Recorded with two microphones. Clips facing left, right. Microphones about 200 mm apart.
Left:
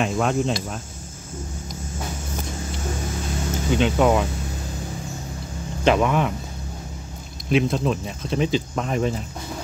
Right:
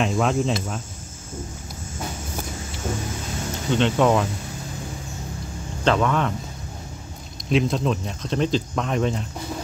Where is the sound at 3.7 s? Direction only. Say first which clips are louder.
Even; 5° left (ahead or behind).